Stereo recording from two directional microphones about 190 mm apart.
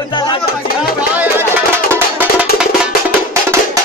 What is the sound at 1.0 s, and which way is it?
Music, 10° right (ahead or behind).